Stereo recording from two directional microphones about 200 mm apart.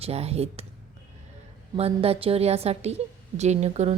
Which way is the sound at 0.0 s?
30° right (ahead or behind).